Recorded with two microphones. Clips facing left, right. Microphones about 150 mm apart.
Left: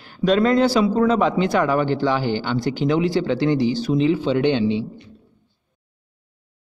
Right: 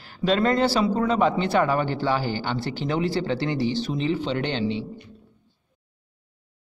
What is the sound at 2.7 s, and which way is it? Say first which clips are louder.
Speech: left 6 dB; 30° right (ahead or behind).